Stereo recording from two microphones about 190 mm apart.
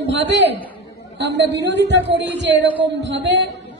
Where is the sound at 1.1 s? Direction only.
65° right (ahead or behind).